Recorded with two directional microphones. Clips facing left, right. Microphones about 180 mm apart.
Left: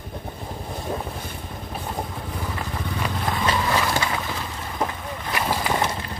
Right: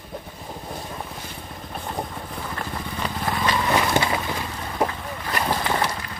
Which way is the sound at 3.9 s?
20° right (ahead or behind).